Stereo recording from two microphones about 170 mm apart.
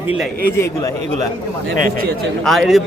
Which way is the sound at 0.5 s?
20° left (ahead or behind).